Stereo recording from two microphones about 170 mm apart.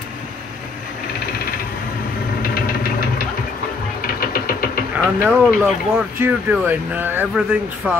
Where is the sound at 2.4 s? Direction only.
60° left (ahead or behind).